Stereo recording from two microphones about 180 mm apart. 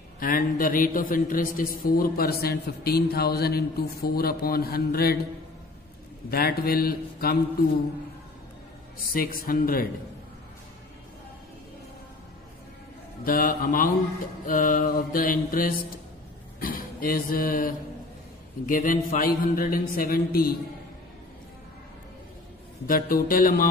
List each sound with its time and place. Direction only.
0.2 s a man's voice: 50° left (ahead or behind)
6.3 s a man's voice: 55° left (ahead or behind)
9.1 s a man's voice: 55° left (ahead or behind)
13.2 s a man's voice: 50° left (ahead or behind)
22.8 s a man's voice: 55° left (ahead or behind)